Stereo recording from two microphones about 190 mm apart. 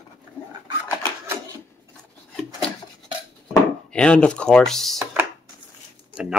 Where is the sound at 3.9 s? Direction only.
5° left (ahead or behind).